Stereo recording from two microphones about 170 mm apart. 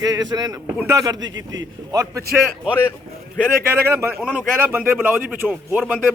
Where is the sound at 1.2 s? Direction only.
90° right.